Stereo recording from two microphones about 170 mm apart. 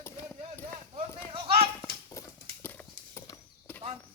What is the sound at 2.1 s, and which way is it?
Horse, 15° left (ahead or behind).